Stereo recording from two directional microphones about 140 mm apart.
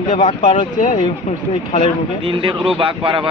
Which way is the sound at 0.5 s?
65° left (ahead or behind).